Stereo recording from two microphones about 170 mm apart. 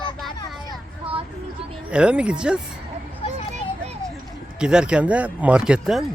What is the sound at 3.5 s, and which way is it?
Children playing, 40° right (ahead or behind).